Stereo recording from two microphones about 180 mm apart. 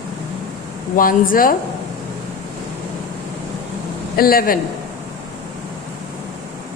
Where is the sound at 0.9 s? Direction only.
50° left (ahead or behind).